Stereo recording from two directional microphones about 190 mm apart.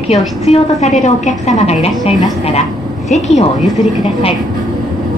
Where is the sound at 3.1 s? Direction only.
40° left (ahead or behind).